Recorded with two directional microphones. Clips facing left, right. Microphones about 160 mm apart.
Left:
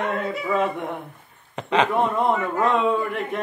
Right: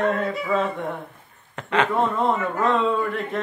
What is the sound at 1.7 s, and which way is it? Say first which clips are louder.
Speech: left 1 dB; 15° left (ahead or behind).